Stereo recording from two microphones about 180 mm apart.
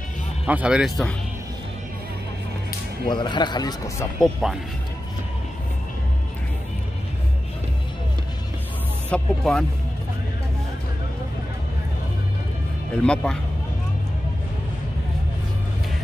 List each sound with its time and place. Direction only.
0.5 s speech: 5° right (ahead or behind)
3.1 s a man's voice: 25° left (ahead or behind)
4.2 s speech: centre (ahead or behind)
9.1 s speech: 5° left (ahead or behind)
12.9 s speech: 5° left (ahead or behind)